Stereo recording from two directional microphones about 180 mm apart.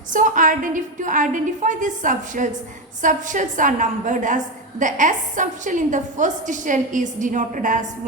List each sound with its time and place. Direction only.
0.1 s a woman's voice: 45° right (ahead or behind)